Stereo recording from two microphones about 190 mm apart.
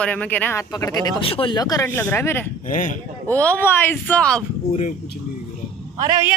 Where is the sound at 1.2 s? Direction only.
30° left (ahead or behind); by 2.4 s 10° left (ahead or behind).